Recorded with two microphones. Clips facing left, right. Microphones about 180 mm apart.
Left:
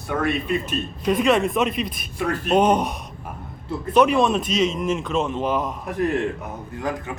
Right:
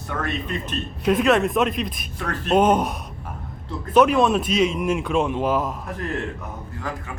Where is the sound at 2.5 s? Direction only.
5° right (ahead or behind).